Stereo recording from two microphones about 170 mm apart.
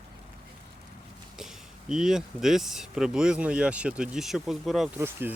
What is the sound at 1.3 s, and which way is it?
Speech, 5° right (ahead or behind).